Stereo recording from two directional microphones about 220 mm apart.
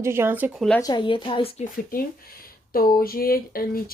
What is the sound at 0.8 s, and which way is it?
Speech, 20° left (ahead or behind).